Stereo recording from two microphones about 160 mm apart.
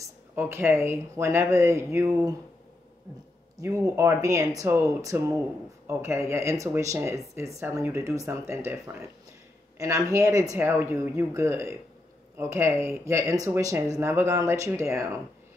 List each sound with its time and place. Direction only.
0.0 s speech: 15° right (ahead or behind)
3.5 s speech: 20° right (ahead or behind)